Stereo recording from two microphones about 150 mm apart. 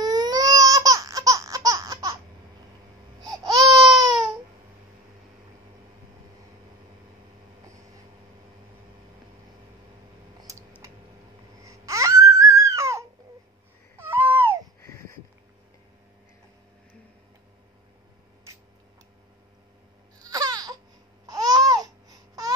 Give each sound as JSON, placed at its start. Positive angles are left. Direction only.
{"t": 0.0, "sound": "baby cry", "side_deg": -25}
{"t": 3.3, "sound": "baby cry", "side_deg": -25}
{"t": 11.6, "sound": "babbling", "side_deg": -20}
{"t": 13.9, "sound": "baby cry", "side_deg": -15}
{"t": 14.8, "sound": "a sound", "side_deg": 20}
{"t": 20.2, "sound": "baby cry", "side_deg": -25}
{"t": 21.3, "sound": "babbling", "side_deg": -25}